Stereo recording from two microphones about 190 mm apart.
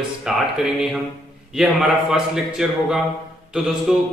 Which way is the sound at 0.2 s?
Centre (ahead or behind).